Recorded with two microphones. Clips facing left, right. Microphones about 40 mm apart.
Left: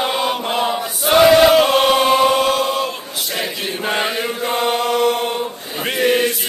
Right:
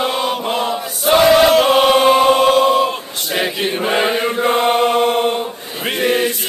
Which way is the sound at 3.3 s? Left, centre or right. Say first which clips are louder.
Right 6 dB; right.